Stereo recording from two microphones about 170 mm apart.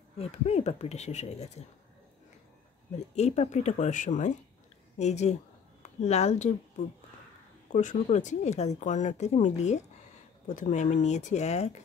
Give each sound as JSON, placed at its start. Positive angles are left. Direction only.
{"t": 0.2, "sound": "speech", "side_deg": 40}
{"t": 3.2, "sound": "speech", "side_deg": 40}
{"t": 7.7, "sound": "speech", "side_deg": 45}